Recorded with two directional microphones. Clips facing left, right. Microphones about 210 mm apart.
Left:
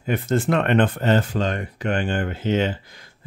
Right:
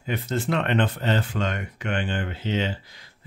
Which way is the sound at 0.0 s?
50° left (ahead or behind).